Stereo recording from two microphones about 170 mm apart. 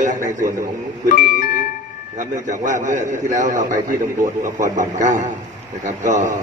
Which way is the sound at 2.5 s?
50° right (ahead or behind).